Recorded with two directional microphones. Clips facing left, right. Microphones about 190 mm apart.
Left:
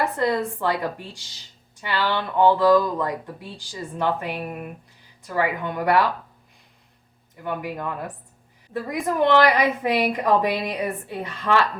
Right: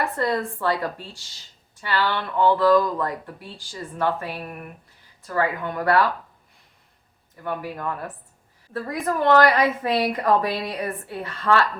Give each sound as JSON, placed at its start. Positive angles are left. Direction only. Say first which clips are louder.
{"t": 0.0, "sound": "speech", "louder": "left 2 dB", "side_deg": 15}
{"t": 7.4, "sound": "speech", "louder": "even", "side_deg": 15}